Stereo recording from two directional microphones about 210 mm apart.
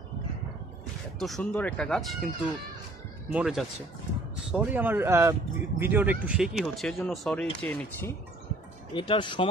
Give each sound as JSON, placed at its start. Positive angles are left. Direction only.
{"t": 1.2, "sound": "speech", "side_deg": 5}
{"t": 8.9, "sound": "speech", "side_deg": 25}